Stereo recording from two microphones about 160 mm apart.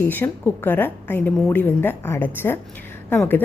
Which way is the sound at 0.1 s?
10° left (ahead or behind).